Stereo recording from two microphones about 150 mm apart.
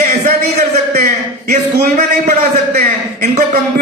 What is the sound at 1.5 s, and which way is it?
A man's voice, 55° right (ahead or behind).